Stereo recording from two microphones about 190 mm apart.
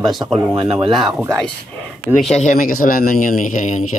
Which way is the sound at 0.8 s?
25° right (ahead or behind).